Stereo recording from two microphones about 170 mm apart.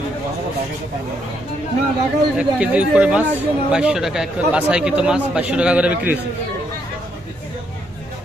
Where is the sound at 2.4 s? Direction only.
5° right (ahead or behind).